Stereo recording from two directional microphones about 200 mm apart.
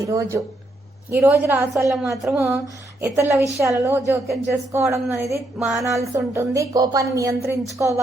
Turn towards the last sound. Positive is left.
turn(degrees=-15)  # may be behind; listen again after turning